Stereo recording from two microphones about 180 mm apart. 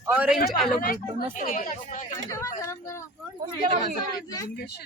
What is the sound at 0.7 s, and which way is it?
Speech, 50° left (ahead or behind).